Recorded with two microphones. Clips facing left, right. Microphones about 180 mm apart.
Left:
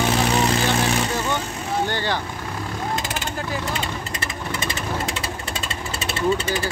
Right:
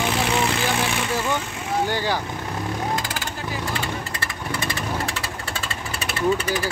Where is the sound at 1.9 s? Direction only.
10° right (ahead or behind).